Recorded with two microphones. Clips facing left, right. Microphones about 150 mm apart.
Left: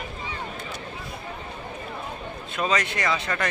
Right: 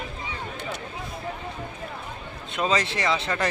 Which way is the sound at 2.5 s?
25° right (ahead or behind).